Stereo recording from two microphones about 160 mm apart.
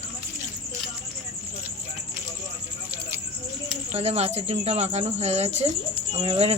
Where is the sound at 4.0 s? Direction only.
40° right (ahead or behind).